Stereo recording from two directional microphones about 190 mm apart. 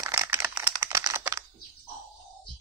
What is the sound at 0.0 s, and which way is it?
Computer keyboard, 15° right (ahead or behind).